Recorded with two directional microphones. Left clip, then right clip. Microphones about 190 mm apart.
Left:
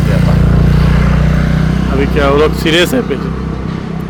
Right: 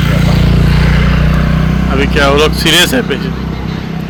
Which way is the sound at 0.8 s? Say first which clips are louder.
Right 1 dB; 35° right (ahead or behind).